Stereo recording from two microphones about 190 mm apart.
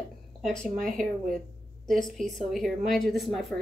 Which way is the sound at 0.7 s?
45° right (ahead or behind).